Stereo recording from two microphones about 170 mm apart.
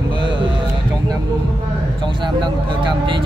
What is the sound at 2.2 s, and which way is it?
Speech, 30° right (ahead or behind).